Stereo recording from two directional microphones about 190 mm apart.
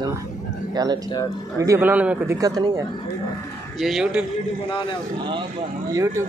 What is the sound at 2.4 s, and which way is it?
Speech, 20° right (ahead or behind).